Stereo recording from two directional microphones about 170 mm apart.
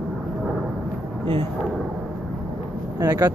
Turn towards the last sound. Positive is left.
turn(degrees=-20)  # may be behind; listen again after turning